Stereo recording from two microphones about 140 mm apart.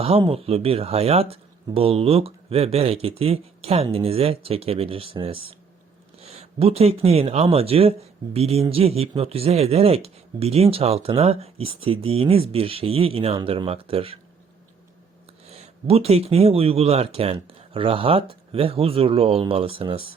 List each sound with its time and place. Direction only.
0.3 s speech: 45° right (ahead or behind)
15.4 s speech: 45° right (ahead or behind)